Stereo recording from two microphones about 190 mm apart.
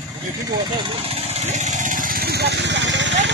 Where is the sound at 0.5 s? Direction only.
30° right (ahead or behind); by 3.3 s 70° right (ahead or behind).